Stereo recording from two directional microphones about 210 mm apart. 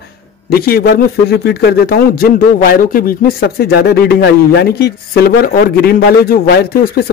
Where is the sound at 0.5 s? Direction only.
45° left (ahead or behind).